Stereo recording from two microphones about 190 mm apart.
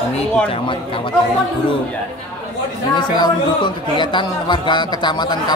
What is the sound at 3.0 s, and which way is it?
Speech, 25° left (ahead or behind).